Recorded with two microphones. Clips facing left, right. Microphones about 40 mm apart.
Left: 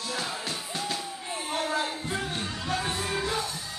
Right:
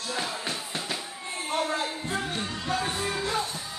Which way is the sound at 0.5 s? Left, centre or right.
Centre.